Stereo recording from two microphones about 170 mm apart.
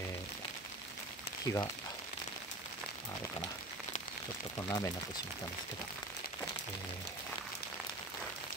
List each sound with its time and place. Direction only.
1.4 s speech: 20° left (ahead or behind)
4.6 s speech: 20° left (ahead or behind)